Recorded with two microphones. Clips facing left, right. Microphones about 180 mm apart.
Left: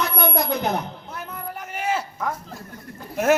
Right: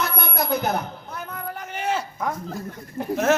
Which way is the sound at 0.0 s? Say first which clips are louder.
Left 3 dB; 5° right (ahead or behind).